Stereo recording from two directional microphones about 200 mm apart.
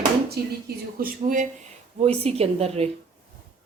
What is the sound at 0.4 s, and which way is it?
Speech, 50° right (ahead or behind).